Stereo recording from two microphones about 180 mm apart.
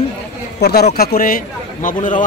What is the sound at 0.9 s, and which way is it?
A man's voice, 55° left (ahead or behind).